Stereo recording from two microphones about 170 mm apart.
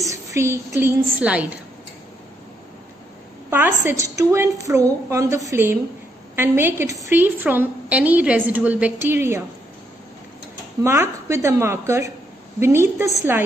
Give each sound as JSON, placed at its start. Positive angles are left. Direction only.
{"t": 0.0, "sound": "a woman's voice", "side_deg": -20}
{"t": 3.4, "sound": "a woman's voice", "side_deg": -15}
{"t": 10.8, "sound": "a woman's voice", "side_deg": -15}